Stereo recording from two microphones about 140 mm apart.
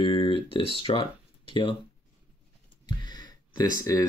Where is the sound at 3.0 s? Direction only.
30° left (ahead or behind).